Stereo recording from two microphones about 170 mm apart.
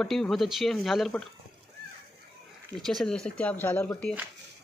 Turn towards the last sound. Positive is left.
turn(degrees=10)  # may be behind; listen again after turning